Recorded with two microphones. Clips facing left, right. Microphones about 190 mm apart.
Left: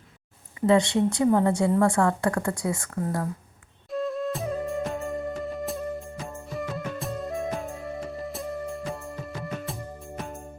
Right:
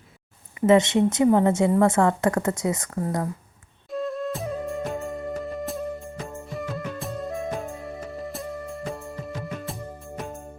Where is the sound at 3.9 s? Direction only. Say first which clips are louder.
Even; centre (ahead or behind).